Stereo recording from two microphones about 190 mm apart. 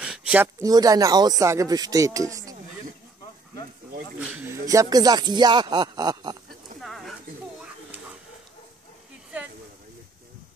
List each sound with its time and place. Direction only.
0.0 s speech: 5° right (ahead or behind)
4.3 s speech: 10° right (ahead or behind)
6.8 s a sound: centre (ahead or behind)